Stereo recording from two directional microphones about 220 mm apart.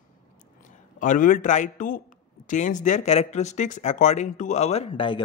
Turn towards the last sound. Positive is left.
turn(degrees=25)  # may be behind; listen again after turning